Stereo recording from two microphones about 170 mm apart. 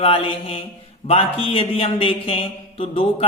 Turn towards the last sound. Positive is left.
turn(degrees=35)  # may be behind; listen again after turning